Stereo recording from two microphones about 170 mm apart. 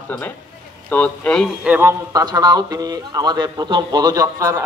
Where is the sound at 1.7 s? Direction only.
15° right (ahead or behind).